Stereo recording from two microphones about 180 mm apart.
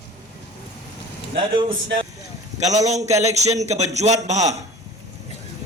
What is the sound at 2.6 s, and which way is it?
Speech, 40° right (ahead or behind).